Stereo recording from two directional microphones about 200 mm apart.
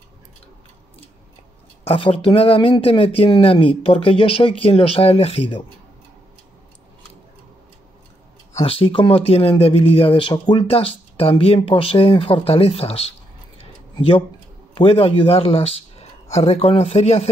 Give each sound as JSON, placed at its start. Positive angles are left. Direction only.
{"t": 1.9, "sound": "speech", "side_deg": 30}
{"t": 8.5, "sound": "speech", "side_deg": 30}
{"t": 13.6, "sound": "a sound", "side_deg": 30}
{"t": 14.7, "sound": "speech", "side_deg": 30}